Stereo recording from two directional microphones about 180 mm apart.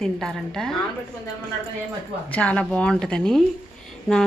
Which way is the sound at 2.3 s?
5° left (ahead or behind).